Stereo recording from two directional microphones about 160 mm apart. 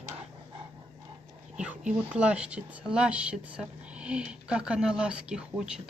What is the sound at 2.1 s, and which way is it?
Speech, 10° right (ahead or behind).